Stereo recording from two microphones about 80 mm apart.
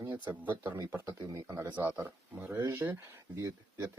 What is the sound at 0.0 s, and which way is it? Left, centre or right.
Speech, right.